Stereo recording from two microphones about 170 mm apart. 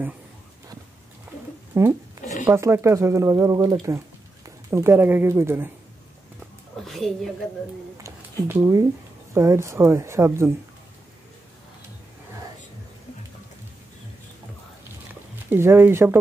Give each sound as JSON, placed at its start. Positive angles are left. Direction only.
{"t": 1.7, "sound": "speech", "side_deg": -15}
{"t": 6.8, "sound": "a woman's voice", "side_deg": 0}
{"t": 8.0, "sound": "a sound", "side_deg": -20}
{"t": 9.3, "sound": "speech", "side_deg": -15}
{"t": 15.5, "sound": "speech", "side_deg": -15}